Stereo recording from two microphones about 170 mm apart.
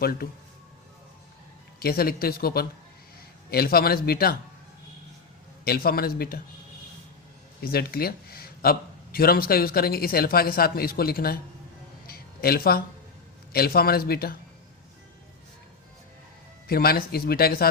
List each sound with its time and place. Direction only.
0.0 s a man's voice: 65° left (ahead or behind)
1.8 s a man's voice: 60° left (ahead or behind)
5.6 s a man's voice: 60° left (ahead or behind)
7.6 s a man's voice: 65° left (ahead or behind)
12.0 s a sound: 65° left (ahead or behind)
13.5 s a man's voice: 65° left (ahead or behind)
16.6 s a man's voice: 60° left (ahead or behind)